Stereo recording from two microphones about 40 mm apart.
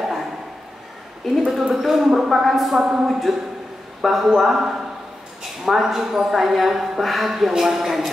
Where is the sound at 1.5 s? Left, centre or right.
Centre.